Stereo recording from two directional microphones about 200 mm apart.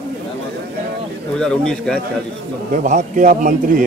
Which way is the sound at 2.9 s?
45° right (ahead or behind).